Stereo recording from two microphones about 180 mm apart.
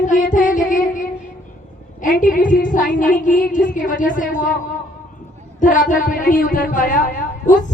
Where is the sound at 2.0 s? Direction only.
50° left (ahead or behind).